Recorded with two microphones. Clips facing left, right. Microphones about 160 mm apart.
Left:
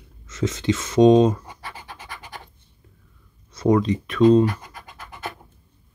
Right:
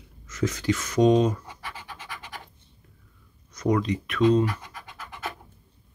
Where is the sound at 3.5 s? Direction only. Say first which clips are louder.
Left 5 dB; 30° left (ahead or behind).